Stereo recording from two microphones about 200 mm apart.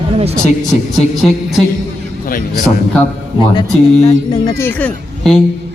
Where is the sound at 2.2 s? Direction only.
40° left (ahead or behind).